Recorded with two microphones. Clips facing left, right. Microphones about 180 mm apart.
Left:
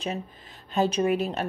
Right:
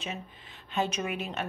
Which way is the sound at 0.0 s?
40° left (ahead or behind).